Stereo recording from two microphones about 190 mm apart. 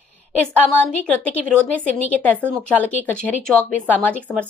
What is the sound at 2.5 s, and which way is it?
Speech, 10° left (ahead or behind).